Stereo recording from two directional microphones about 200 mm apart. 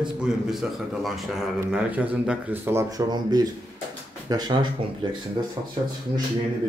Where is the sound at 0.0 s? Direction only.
5° right (ahead or behind); by 5.1 s 25° right (ahead or behind).